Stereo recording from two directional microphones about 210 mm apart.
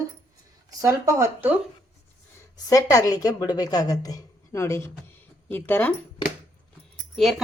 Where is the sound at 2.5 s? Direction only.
15° left (ahead or behind).